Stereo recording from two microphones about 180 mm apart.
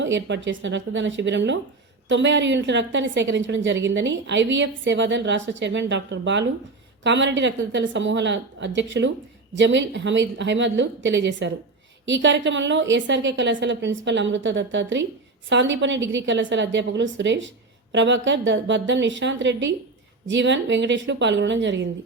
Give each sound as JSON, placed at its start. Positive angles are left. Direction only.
{"t": 0.0, "sound": "a woman's voice", "side_deg": -90}